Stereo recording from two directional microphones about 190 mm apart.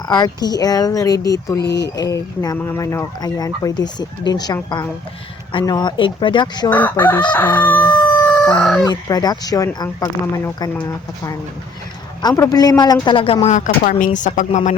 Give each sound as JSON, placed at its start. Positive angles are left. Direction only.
{"t": 0.1, "sound": "speech", "side_deg": 20}
{"t": 6.7, "sound": "crowing", "side_deg": 10}
{"t": 8.2, "sound": "fowl", "side_deg": 5}
{"t": 8.8, "sound": "speech", "side_deg": 20}
{"t": 12.4, "sound": "a woman's voice", "side_deg": 20}